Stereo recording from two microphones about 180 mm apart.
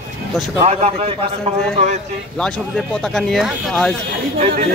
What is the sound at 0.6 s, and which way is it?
A man's voice, 35° right (ahead or behind).